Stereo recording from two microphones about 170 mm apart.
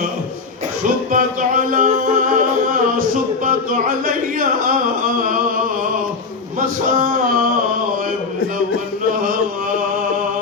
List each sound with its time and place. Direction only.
0.8 s music: 50° right (ahead or behind)
6.6 s a man's voice: 55° right (ahead or behind)
9.2 s a sound: 55° right (ahead or behind)